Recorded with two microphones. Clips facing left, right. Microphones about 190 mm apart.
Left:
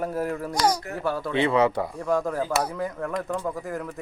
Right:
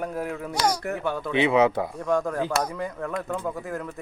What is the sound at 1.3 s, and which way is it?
Speech, 15° right (ahead or behind).